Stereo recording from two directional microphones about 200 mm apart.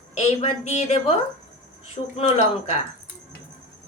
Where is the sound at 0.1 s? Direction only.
30° left (ahead or behind).